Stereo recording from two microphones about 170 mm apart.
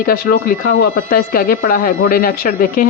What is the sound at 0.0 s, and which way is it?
Speech, 60° left (ahead or behind).